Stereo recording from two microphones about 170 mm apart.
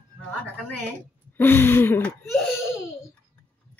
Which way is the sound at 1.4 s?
10° left (ahead or behind).